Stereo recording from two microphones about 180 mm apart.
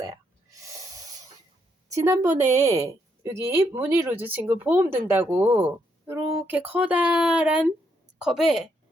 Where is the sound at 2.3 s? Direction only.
40° right (ahead or behind).